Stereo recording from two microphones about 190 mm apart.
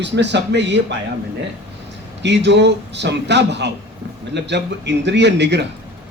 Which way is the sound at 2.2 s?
65° right (ahead or behind).